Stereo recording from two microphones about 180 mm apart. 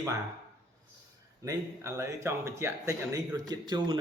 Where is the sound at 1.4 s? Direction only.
15° right (ahead or behind).